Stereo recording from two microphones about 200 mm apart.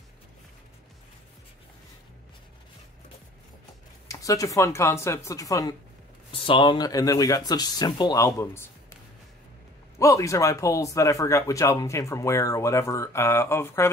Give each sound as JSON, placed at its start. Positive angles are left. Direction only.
{"t": 4.1, "sound": "speech", "side_deg": 15}
{"t": 9.9, "sound": "speech", "side_deg": 15}